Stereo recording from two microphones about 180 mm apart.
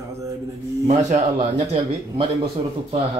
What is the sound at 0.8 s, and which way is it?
Speech, 35° right (ahead or behind).